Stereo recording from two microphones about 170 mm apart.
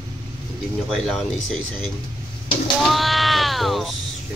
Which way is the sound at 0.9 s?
Centre (ahead or behind).